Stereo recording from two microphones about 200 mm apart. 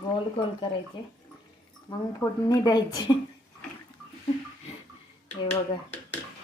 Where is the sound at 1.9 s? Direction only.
20° left (ahead or behind).